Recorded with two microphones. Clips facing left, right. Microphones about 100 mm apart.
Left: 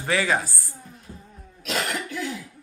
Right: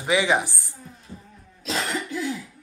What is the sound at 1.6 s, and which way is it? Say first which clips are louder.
Cough: even; 30° right (ahead or behind).